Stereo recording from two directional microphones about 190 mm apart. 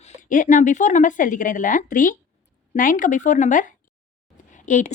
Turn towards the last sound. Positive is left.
turn(degrees=40)  # may be behind; listen again after turning